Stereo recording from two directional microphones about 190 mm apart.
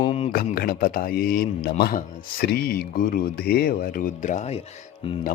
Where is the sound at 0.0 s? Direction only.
30° left (ahead or behind).